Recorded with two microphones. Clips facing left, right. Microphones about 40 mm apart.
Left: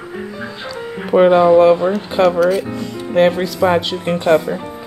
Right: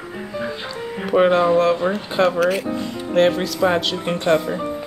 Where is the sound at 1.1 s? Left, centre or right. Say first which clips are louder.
Left 5 dB; centre.